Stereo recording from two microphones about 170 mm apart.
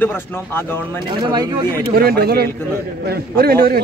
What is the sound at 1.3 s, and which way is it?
Speech, 25° right (ahead or behind).